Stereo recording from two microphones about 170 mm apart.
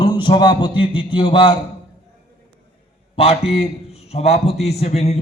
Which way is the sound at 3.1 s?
35° left (ahead or behind).